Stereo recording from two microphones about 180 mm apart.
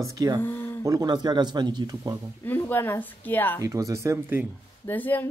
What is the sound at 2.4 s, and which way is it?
Speech, 10° left (ahead or behind).